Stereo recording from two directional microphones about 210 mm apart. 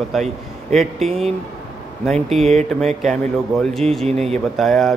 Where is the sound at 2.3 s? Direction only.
Centre (ahead or behind).